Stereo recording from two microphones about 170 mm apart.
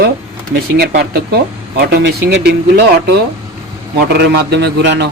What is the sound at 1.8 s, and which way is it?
A man's voice, 80° right.